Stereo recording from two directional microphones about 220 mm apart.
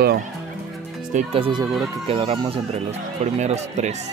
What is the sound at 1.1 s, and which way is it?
Speech, 25° right (ahead or behind).